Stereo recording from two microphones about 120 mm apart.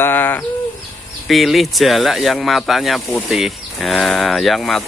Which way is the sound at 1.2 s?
Centre (ahead or behind).